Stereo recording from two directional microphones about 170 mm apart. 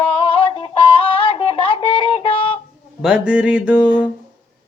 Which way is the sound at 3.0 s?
5° right (ahead or behind).